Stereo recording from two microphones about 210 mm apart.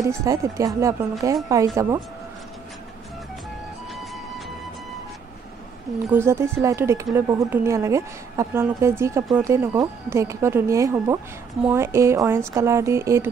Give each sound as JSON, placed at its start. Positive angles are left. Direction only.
{"t": 0.0, "sound": "speech", "side_deg": -15}
{"t": 6.1, "sound": "speech", "side_deg": -10}